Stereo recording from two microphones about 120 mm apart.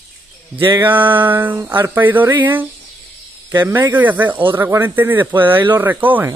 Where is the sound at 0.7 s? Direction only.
15° right (ahead or behind).